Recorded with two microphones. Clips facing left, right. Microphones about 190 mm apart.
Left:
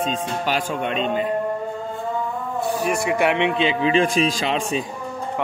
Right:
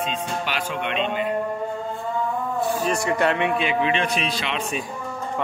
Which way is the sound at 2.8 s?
10° left (ahead or behind).